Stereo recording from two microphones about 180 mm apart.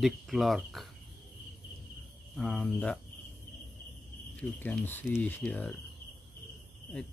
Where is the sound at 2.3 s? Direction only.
5° left (ahead or behind).